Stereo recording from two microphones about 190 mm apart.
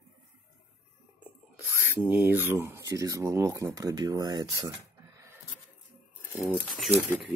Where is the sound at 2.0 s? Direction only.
10° right (ahead or behind).